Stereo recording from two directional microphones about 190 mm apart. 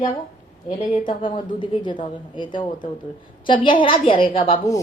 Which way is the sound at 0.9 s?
25° left (ahead or behind).